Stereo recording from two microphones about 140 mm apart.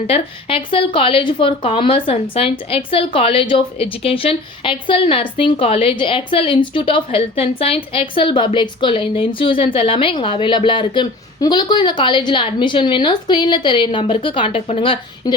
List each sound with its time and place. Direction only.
0.1 s a woman's voice: 40° left (ahead or behind)